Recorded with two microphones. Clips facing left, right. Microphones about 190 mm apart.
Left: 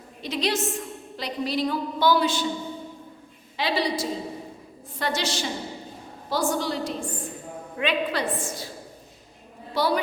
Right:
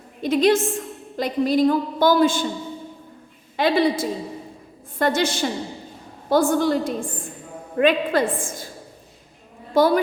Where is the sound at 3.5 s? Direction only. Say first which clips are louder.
Right 7 dB; 50° right (ahead or behind).